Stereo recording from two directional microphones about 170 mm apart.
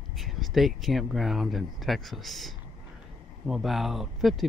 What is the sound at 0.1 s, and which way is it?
Speech, centre (ahead or behind).